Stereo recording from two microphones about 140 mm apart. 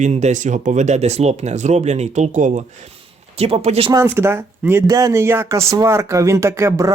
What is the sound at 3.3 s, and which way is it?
Speech, 50° right (ahead or behind).